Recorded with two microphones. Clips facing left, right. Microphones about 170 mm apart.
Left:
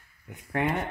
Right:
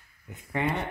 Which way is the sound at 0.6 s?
15° left (ahead or behind).